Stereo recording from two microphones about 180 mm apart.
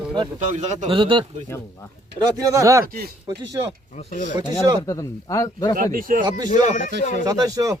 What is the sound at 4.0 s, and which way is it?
Speech, 40° left (ahead or behind).